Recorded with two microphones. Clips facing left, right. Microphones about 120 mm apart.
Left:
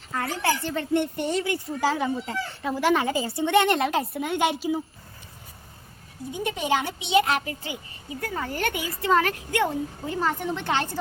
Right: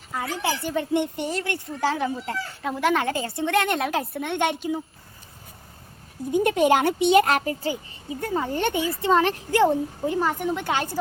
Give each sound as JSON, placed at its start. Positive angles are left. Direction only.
{"t": 0.4, "sound": "a woman's voice", "side_deg": -10}
{"t": 1.2, "sound": "speech", "side_deg": 0}
{"t": 6.3, "sound": "speech", "side_deg": -50}
{"t": 8.2, "sound": "a woman's voice", "side_deg": -25}
{"t": 10.1, "sound": "a woman's voice", "side_deg": -10}